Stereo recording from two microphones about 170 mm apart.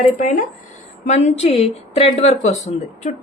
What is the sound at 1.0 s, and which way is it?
A woman's voice, 40° left (ahead or behind).